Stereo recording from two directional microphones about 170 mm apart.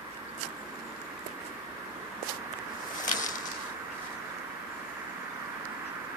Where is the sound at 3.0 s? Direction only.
50° left (ahead or behind).